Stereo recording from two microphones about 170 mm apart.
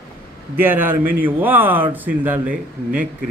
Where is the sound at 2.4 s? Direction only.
50° right (ahead or behind).